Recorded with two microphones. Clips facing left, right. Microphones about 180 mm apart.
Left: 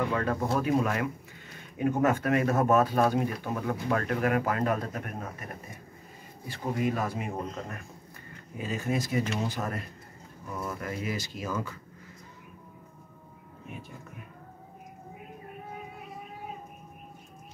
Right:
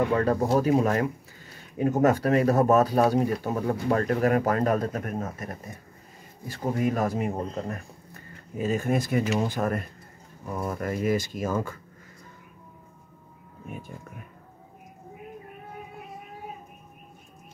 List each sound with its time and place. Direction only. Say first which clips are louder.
0.1 s speech: right 6 dB; 35° right (ahead or behind)
8.5 s speech: right 5 dB; 50° right (ahead or behind)